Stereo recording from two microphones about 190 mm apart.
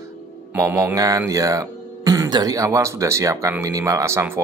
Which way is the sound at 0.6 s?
15° right (ahead or behind).